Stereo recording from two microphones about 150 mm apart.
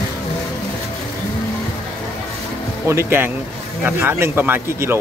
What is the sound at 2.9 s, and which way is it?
Speech, 15° right (ahead or behind).